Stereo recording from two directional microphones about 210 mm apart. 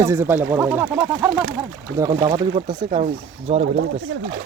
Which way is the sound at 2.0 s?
15° right (ahead or behind).